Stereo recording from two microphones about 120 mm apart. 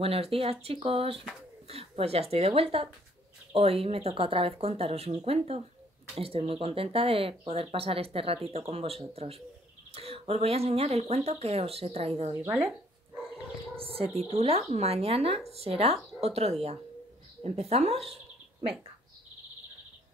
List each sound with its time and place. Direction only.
0.0 s speech: 55° right (ahead or behind)
12.4 s speech: 10° right (ahead or behind)
13.7 s speech: 50° right (ahead or behind)